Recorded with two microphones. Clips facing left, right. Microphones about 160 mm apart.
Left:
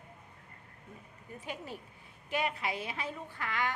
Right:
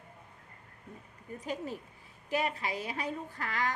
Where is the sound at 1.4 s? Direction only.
40° right (ahead or behind).